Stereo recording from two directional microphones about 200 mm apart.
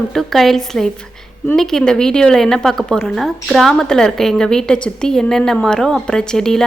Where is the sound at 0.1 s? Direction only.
Centre (ahead or behind).